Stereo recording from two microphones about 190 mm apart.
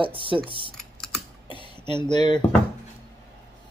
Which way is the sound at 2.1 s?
25° left (ahead or behind).